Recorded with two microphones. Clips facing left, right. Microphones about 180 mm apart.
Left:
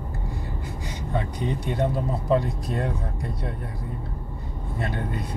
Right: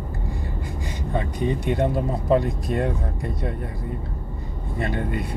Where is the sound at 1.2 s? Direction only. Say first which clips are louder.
Right 4 dB; 15° right (ahead or behind).